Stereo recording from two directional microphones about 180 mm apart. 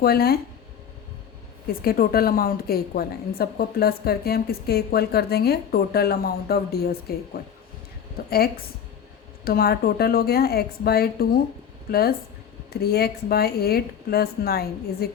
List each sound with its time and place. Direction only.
0.0 s a woman's voice: 60° left (ahead or behind)
1.6 s a woman's voice: 55° left (ahead or behind)
8.2 s a woman's voice: 55° left (ahead or behind)
9.4 s a woman's voice: 55° left (ahead or behind)